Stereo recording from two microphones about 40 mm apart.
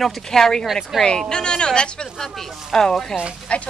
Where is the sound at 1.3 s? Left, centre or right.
Centre.